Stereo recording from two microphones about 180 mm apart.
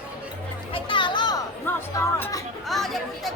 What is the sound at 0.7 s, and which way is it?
Music, 25° left (ahead or behind).